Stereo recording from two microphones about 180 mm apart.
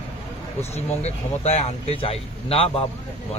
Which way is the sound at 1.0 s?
35° left (ahead or behind).